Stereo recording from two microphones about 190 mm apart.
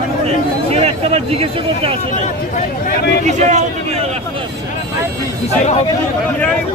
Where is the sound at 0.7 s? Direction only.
35° right (ahead or behind).